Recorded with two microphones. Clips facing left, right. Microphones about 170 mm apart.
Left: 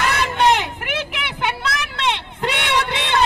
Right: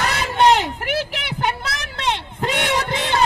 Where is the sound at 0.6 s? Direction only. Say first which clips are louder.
Right 3 dB; 40° right (ahead or behind).